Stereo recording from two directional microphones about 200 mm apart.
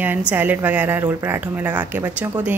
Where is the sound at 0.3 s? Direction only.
10° right (ahead or behind).